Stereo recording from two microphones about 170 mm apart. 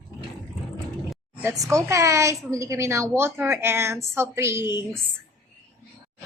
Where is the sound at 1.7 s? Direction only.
15° right (ahead or behind).